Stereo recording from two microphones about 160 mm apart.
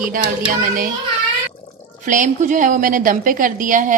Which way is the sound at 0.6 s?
60° right (ahead or behind).